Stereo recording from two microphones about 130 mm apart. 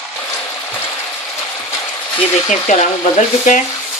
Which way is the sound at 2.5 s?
70° left (ahead or behind).